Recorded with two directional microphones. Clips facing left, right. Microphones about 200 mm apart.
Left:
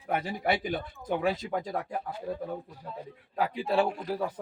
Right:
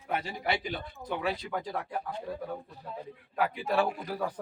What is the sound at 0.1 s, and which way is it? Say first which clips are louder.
Speech: left 3 dB; 50° left (ahead or behind).